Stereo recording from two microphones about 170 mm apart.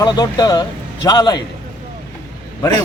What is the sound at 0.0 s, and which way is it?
Speech, 25° left (ahead or behind).